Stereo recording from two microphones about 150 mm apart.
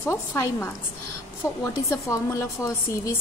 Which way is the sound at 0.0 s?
15° left (ahead or behind).